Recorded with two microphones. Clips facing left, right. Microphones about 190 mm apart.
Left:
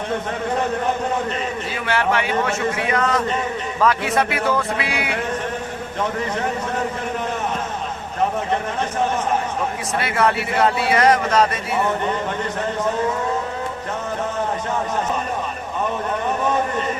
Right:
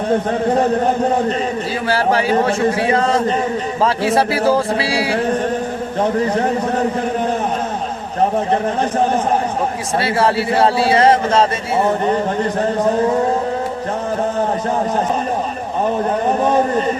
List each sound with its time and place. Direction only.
0.1 s speech: 35° right (ahead or behind)
8.8 s speech: 35° right (ahead or behind)
15.8 s speech: 35° right (ahead or behind)